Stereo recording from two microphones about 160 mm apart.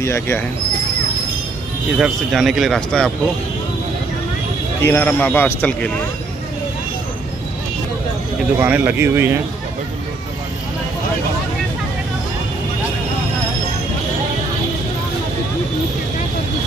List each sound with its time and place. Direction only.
0.0 s speech: 15° left (ahead or behind)
2.0 s speech: centre (ahead or behind)
4.8 s speech: 15° left (ahead or behind)
8.5 s speech: 10° right (ahead or behind)